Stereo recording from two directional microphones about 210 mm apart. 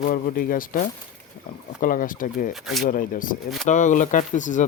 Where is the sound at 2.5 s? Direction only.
Centre (ahead or behind).